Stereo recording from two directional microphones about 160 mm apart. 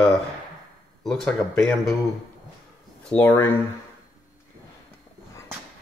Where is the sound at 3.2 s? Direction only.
15° left (ahead or behind).